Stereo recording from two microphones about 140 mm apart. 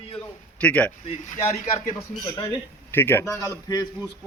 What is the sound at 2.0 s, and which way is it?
A man's voice, 20° left (ahead or behind).